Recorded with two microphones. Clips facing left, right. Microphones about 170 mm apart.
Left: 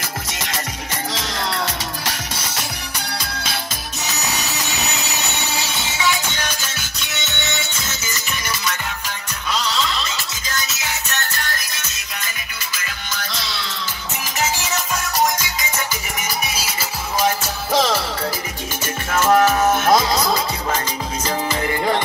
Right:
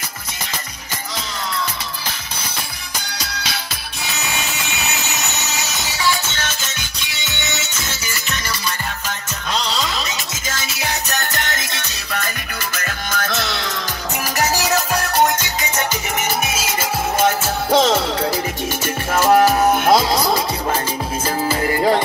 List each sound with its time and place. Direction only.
4.0 s music: 40° left (ahead or behind)
5.6 s music: 30° left (ahead or behind)
10.8 s music: 35° right (ahead or behind)
12.7 s music: 50° right (ahead or behind)
14.7 s music: 60° right (ahead or behind)
16.5 s music: 50° right (ahead or behind)
17.7 s music: 25° right (ahead or behind)
19.0 s music: 35° right (ahead or behind)
21.5 s music: 40° right (ahead or behind)